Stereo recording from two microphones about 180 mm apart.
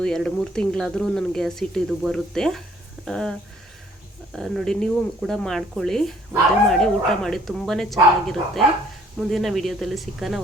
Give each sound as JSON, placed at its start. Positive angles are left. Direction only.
{"t": 0.0, "sound": "speech", "side_deg": 5}